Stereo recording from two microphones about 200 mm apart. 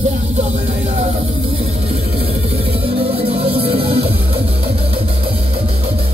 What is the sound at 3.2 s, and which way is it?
Music, 30° right (ahead or behind).